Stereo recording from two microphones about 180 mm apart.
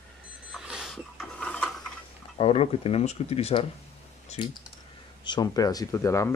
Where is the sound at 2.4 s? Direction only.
30° left (ahead or behind); by 6.3 s 15° left (ahead or behind).